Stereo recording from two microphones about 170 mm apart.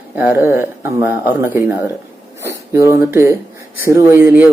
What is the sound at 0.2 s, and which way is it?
Speech, 10° right (ahead or behind).